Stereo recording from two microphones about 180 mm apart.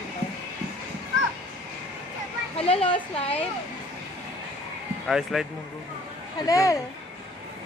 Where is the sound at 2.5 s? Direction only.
35° left (ahead or behind).